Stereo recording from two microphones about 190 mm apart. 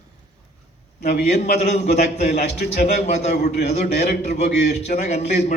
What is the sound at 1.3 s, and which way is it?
A man's voice, 35° left (ahead or behind).